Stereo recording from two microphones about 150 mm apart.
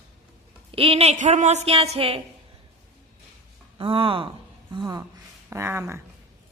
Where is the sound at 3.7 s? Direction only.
35° right (ahead or behind).